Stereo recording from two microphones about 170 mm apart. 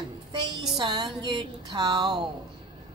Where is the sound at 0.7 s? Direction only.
25° right (ahead or behind).